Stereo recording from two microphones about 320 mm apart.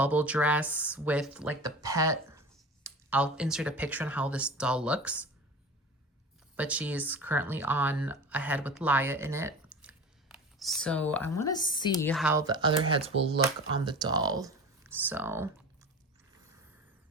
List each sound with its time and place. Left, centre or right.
0.0 s speech: centre
6.6 s speech: centre